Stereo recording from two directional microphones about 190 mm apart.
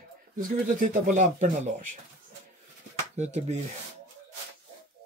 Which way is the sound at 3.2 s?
35° right (ahead or behind).